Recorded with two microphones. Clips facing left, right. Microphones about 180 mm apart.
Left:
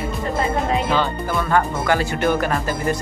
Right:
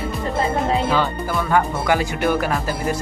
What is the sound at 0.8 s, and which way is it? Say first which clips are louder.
Speech: even; 10° right (ahead or behind).